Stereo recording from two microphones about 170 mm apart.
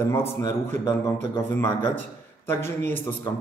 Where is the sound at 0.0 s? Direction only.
15° left (ahead or behind).